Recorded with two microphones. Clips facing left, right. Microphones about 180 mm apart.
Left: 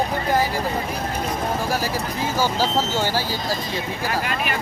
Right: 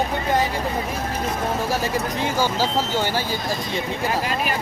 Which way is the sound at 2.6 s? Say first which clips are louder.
Even; 15° right (ahead or behind).